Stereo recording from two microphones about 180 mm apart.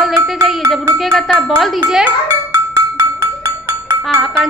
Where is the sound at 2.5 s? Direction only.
15° right (ahead or behind).